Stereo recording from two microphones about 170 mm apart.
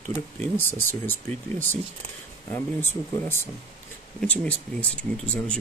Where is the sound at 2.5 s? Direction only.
15° left (ahead or behind).